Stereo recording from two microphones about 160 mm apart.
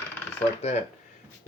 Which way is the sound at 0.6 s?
45° left (ahead or behind).